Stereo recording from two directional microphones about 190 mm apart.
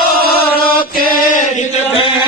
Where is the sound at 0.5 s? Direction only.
50° left (ahead or behind).